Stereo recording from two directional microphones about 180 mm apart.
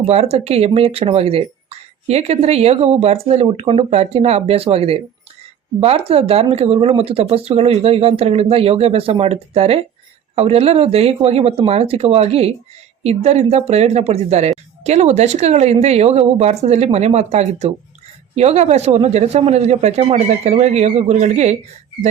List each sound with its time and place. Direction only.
0.1 s speech: 35° right (ahead or behind)